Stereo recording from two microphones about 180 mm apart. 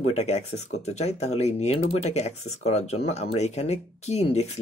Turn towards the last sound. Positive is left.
turn(degrees=35)  # may be behind; listen again after turning